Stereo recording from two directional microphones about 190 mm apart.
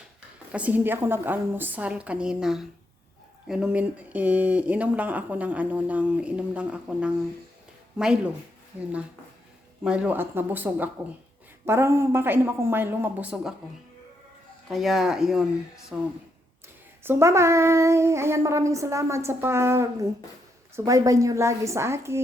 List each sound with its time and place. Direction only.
0.5 s speech: 10° right (ahead or behind)
9.8 s speech: 5° right (ahead or behind)
14.7 s speech: centre (ahead or behind)